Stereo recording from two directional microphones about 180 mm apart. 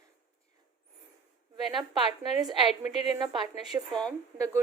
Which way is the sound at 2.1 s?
25° right (ahead or behind).